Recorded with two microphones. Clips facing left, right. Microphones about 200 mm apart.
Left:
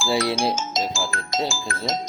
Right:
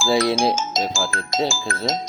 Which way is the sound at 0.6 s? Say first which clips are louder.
Right 2 dB; 40° right (ahead or behind).